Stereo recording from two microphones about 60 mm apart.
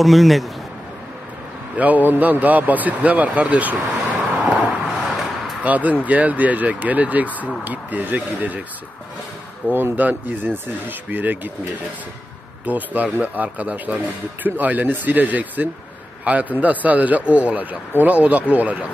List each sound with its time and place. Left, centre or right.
0.0 s a man's voice: centre
1.8 s speech: right
4.4 s vehicle: right
5.0 s a sound: centre
5.6 s speech: right
9.6 s speech: left
9.9 s speech: right